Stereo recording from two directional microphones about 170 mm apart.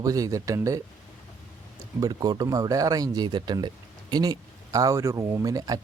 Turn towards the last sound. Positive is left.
turn(degrees=-20)  # may be behind; listen again after turning